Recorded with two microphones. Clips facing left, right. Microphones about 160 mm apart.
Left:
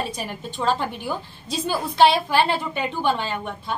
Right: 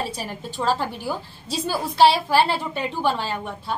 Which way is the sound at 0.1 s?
30° right (ahead or behind).